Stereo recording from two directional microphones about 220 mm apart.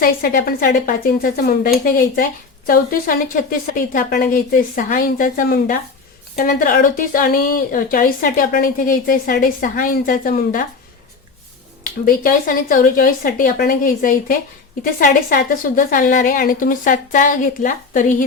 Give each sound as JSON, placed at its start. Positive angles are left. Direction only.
{"t": 0.0, "sound": "a woman's voice", "side_deg": 40}
{"t": 11.8, "sound": "a woman's voice", "side_deg": 40}